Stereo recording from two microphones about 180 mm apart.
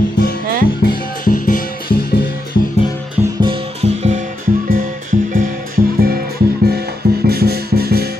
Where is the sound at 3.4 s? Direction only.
30° right (ahead or behind).